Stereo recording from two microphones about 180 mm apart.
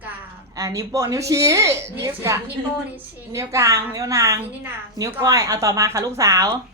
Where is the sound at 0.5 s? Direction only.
20° right (ahead or behind).